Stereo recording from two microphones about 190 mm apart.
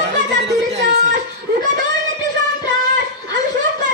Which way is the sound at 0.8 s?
40° right (ahead or behind).